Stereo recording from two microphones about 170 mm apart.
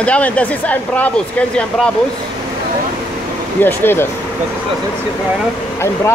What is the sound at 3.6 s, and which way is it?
Speech, 10° left (ahead or behind).